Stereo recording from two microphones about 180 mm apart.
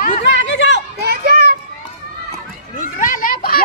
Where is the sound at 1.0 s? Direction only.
60° right (ahead or behind).